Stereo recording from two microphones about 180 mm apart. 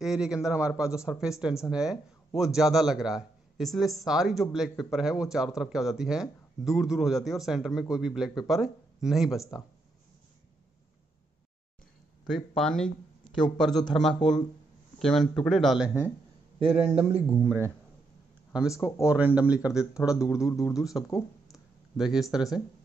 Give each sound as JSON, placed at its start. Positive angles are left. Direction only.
{"t": 0.0, "sound": "a man's voice", "side_deg": -5}
{"t": 12.3, "sound": "a man's voice", "side_deg": 0}
{"t": 16.5, "sound": "a man's voice", "side_deg": -35}
{"t": 17.3, "sound": "speech", "side_deg": -10}
{"t": 19.0, "sound": "speech", "side_deg": -10}
{"t": 20.4, "sound": "speech", "side_deg": 20}
{"t": 20.7, "sound": "speech", "side_deg": 0}
{"t": 21.5, "sound": "a sound", "side_deg": 0}